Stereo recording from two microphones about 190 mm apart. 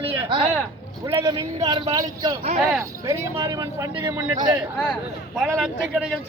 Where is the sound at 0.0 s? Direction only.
30° right (ahead or behind).